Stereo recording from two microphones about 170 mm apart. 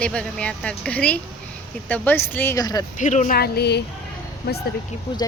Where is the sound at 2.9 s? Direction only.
45° left (ahead or behind).